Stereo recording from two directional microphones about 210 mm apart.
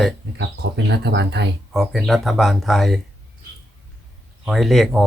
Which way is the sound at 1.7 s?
Centre (ahead or behind).